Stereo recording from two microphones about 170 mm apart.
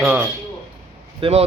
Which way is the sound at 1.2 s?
35° right (ahead or behind).